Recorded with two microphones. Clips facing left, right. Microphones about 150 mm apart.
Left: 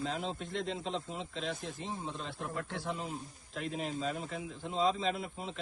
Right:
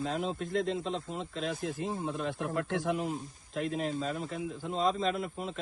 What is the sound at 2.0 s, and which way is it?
Speech, 55° right (ahead or behind).